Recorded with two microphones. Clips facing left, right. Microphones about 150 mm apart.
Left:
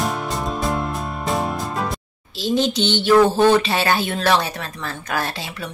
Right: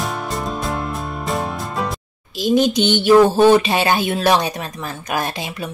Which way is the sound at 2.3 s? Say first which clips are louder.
Right 4 dB; 15° right (ahead or behind).